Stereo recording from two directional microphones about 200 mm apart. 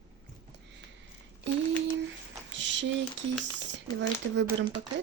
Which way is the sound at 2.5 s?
65° right (ahead or behind).